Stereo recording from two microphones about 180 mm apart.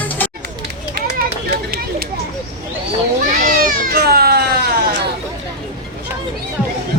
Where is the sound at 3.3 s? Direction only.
50° right (ahead or behind).